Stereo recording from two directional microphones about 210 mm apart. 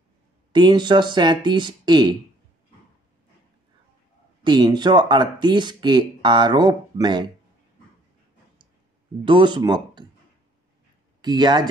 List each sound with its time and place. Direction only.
0.5 s speech: 20° right (ahead or behind)
4.4 s speech: 20° right (ahead or behind)
9.2 s speech: 25° right (ahead or behind)
11.1 s speech: 20° right (ahead or behind)